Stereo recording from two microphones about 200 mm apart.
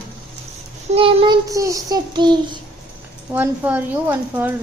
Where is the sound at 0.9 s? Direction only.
30° right (ahead or behind).